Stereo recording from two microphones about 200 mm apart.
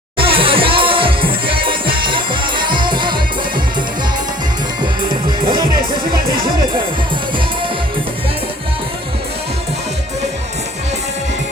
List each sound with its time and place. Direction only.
0.2 s music: 25° right (ahead or behind)